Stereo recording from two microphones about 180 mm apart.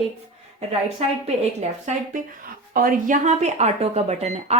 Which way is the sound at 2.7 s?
50° right (ahead or behind).